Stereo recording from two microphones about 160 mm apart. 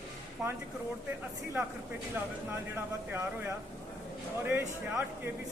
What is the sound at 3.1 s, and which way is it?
Speech, 15° right (ahead or behind).